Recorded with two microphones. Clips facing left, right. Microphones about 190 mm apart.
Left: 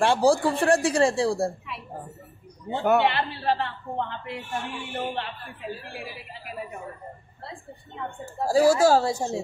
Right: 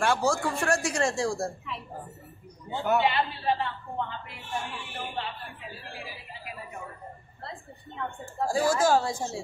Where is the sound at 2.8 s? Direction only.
65° left (ahead or behind).